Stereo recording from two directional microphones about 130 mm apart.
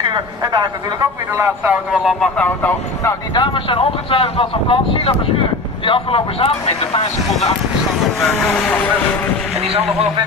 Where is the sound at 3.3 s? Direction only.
40° left (ahead or behind).